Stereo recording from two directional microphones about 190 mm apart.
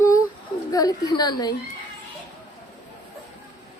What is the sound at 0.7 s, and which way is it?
Speech, 20° left (ahead or behind).